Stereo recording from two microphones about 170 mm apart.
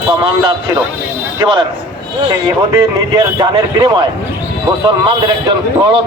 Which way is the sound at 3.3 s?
25° right (ahead or behind).